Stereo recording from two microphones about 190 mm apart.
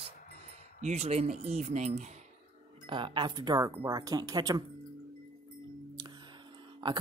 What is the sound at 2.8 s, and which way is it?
Speech, 25° right (ahead or behind).